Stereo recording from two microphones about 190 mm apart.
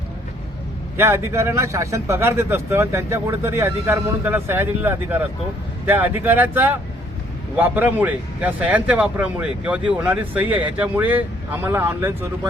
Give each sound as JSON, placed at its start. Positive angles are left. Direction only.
{"t": 0.9, "sound": "speech", "side_deg": -15}